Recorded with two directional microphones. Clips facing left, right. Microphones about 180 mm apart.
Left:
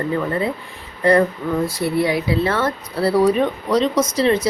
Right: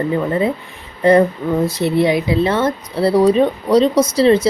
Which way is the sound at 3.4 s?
30° right (ahead or behind).